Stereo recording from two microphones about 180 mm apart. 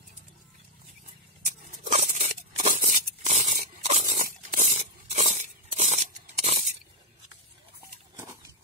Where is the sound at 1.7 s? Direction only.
45° right (ahead or behind).